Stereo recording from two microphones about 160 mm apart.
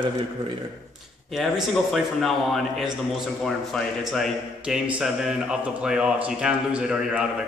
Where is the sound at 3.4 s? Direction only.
Centre (ahead or behind).